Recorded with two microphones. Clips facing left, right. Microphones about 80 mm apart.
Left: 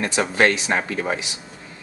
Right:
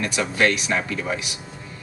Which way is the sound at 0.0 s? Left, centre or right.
Left.